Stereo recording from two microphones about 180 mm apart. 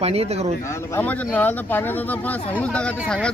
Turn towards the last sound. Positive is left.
turn(degrees=5)  # may be behind; listen again after turning